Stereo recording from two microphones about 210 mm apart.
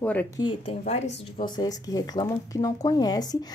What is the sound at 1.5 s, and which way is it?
Speech, 20° left (ahead or behind).